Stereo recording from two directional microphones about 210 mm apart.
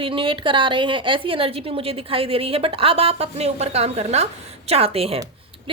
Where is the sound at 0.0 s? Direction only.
25° right (ahead or behind).